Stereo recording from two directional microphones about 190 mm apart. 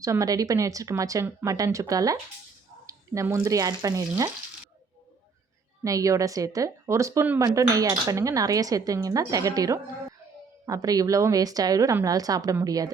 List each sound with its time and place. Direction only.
0.0 s speech: 15° right (ahead or behind)
5.8 s a woman's voice: 15° right (ahead or behind)